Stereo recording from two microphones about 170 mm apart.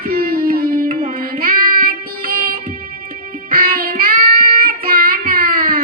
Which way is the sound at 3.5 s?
60° right (ahead or behind).